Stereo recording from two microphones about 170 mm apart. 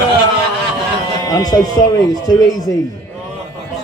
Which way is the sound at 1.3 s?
25° left (ahead or behind).